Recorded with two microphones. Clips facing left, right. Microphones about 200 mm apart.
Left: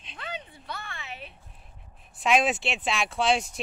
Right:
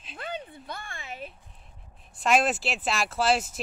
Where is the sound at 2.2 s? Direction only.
Centre (ahead or behind).